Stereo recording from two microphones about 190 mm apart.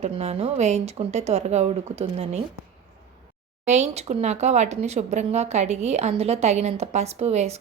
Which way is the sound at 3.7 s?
35° right (ahead or behind).